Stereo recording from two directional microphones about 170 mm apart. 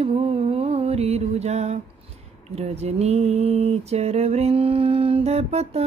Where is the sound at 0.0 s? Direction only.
35° right (ahead or behind).